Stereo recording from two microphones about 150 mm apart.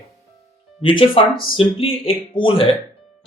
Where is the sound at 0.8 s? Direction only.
35° left (ahead or behind).